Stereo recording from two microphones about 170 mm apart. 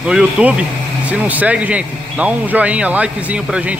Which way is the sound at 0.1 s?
5° right (ahead or behind).